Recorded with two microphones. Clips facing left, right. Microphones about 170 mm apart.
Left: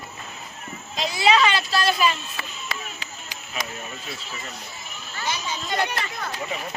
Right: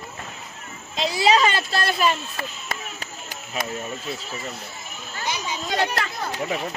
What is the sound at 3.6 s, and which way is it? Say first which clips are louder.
Speech: right 4 dB; 55° right (ahead or behind).